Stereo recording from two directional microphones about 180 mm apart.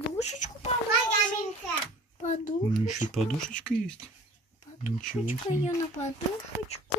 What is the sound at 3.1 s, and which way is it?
Speech, 5° left (ahead or behind).